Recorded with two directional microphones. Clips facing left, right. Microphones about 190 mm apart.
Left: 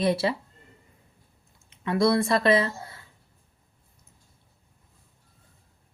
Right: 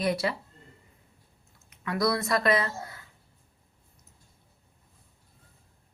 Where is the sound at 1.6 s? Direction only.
25° left (ahead or behind).